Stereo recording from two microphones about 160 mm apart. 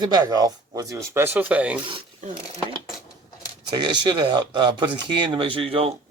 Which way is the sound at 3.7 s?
30° right (ahead or behind).